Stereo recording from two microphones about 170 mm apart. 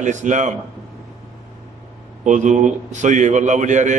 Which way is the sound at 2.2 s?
45° right (ahead or behind).